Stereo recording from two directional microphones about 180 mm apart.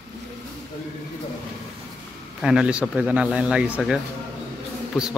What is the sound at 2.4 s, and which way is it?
Speech, 5° right (ahead or behind).